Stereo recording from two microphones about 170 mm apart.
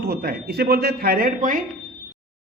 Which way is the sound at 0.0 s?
65° right (ahead or behind).